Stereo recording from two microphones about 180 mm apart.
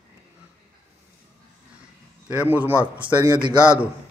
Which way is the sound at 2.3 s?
10° right (ahead or behind).